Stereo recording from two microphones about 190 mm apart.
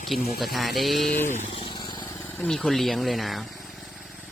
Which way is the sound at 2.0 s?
10° left (ahead or behind).